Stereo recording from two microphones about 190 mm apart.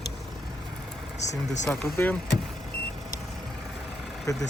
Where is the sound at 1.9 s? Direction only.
10° left (ahead or behind).